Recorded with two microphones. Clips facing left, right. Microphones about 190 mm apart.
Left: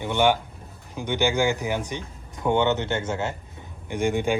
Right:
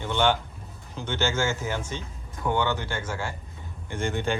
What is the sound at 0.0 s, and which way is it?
Speech, 15° left (ahead or behind).